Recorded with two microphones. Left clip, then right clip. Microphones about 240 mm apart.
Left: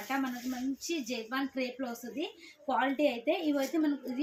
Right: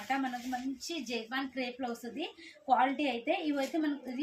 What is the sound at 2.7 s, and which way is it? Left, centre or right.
Speech, centre.